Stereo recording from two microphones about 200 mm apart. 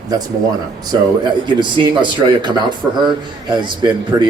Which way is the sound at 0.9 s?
20° right (ahead or behind).